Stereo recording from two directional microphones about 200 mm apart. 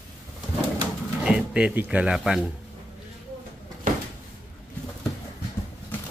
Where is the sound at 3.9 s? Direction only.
45° right (ahead or behind).